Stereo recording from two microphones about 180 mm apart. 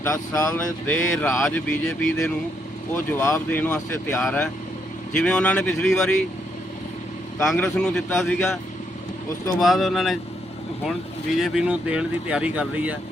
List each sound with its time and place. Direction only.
0.0 s speech: 15° left (ahead or behind)
7.4 s speech: 5° left (ahead or behind)
9.6 s speech: centre (ahead or behind)
11.3 s speech: 5° right (ahead or behind)